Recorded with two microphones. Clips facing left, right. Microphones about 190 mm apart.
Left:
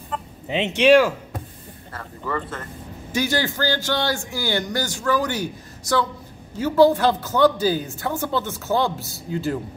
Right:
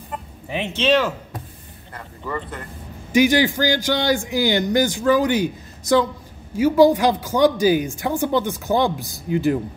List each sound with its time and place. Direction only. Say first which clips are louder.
0.5 s speech: left 4 dB; 20° left (ahead or behind)
2.0 s a man's voice: left 1 dB; 15° right (ahead or behind)